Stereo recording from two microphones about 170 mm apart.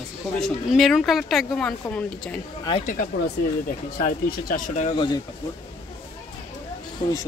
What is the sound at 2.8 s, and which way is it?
Speech, 50° left (ahead or behind).